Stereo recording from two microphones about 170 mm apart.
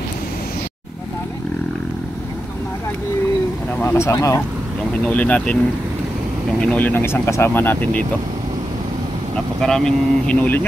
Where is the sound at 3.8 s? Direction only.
15° left (ahead or behind).